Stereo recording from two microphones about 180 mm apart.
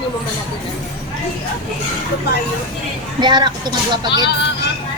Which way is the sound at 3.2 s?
25° right (ahead or behind).